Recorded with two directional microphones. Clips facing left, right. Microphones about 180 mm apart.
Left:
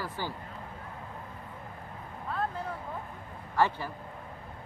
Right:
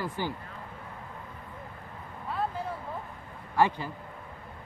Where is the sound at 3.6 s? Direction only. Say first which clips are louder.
Right 2 dB; 15° right (ahead or behind).